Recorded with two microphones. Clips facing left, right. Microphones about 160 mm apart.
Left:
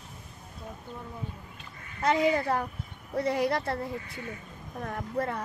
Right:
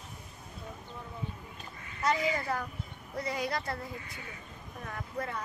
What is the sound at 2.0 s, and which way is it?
Speech, 60° left (ahead or behind).